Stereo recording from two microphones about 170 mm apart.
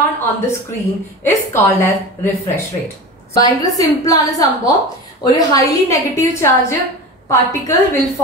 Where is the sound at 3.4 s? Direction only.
20° left (ahead or behind).